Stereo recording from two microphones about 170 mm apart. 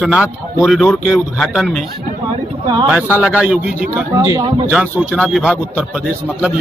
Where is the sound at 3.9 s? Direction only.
20° right (ahead or behind).